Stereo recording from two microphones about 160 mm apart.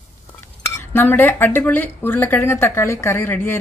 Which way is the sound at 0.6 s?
15° left (ahead or behind).